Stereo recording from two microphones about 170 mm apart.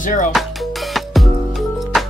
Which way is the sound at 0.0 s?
50° left (ahead or behind).